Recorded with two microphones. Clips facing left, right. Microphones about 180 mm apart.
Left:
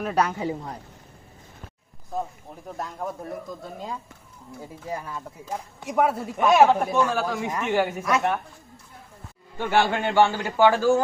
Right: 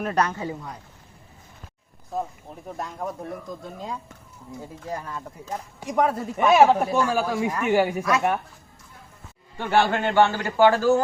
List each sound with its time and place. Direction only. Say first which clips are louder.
0.0 s speech: even; 5° left (ahead or behind)
0.4 s speech: left 3 dB; 30° left (ahead or behind)
2.1 s a man's voice: right 1 dB; centre (ahead or behind)
9.6 s speech: right 1 dB; 10° left (ahead or behind)